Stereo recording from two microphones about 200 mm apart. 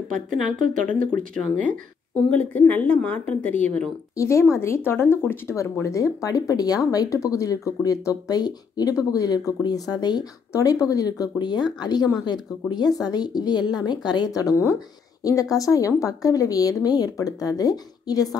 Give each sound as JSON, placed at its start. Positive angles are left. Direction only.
{"t": 0.7, "sound": "a woman's voice", "side_deg": 5}
{"t": 2.7, "sound": "a woman's voice", "side_deg": 5}